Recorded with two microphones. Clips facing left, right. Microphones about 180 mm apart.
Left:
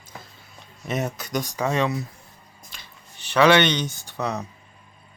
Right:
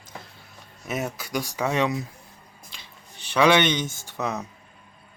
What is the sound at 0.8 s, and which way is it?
Speech, 5° right (ahead or behind).